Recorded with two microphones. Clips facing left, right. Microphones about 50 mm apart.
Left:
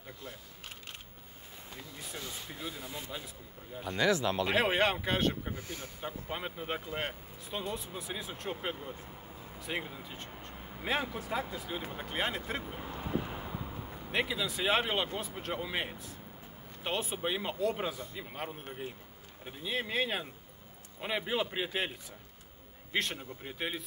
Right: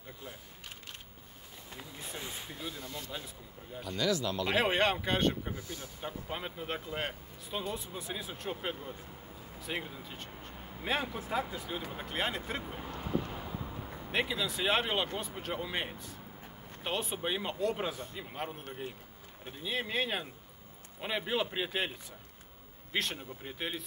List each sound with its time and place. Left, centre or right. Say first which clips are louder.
2.1 s speech: even; right
2.5 s speech: left 2 dB; centre
3.8 s speech: left 3 dB; left
4.5 s speech: right 1 dB; centre
5.5 s speech: even; left
6.0 s speech: even; centre
13.0 s a sound: right 1 dB; centre
14.0 s speech: even; centre
22.9 s speech: left 1 dB; centre